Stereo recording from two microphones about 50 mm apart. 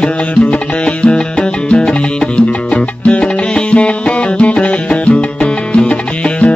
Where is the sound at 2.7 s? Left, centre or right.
Left.